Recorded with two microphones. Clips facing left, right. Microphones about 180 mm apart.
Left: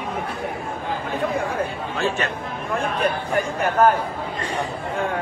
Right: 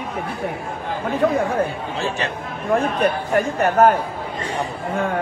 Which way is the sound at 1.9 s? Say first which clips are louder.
Even; 35° right (ahead or behind).